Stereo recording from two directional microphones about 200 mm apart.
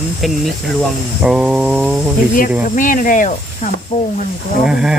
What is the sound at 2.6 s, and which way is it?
Speech, 40° left (ahead or behind).